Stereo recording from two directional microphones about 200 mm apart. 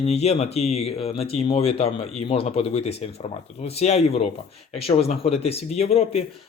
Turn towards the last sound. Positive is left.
turn(degrees=30)  # may be behind; listen again after turning